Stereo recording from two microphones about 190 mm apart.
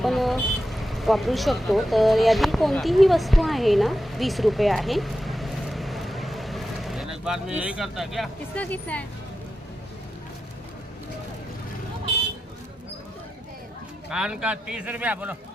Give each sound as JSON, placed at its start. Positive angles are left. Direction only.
{"t": 0.0, "sound": "vehicle", "side_deg": 0}
{"t": 7.6, "sound": "speech", "side_deg": -5}
{"t": 14.1, "sound": "speech", "side_deg": -5}